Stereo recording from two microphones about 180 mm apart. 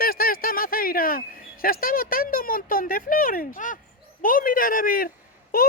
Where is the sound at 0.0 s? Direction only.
55° left (ahead or behind).